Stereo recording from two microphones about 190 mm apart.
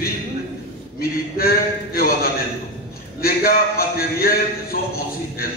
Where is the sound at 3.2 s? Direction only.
50° left (ahead or behind).